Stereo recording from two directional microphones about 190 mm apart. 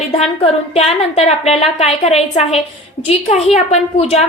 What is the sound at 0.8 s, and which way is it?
A woman's voice, 35° left (ahead or behind).